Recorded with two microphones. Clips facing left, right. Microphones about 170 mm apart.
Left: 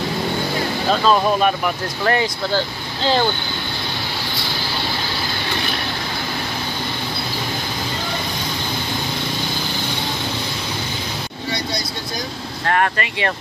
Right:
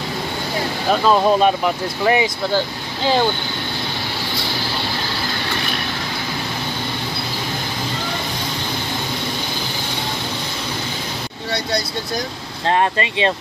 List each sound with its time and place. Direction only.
0.8 s speech: 15° right (ahead or behind)
12.6 s speech: 25° right (ahead or behind)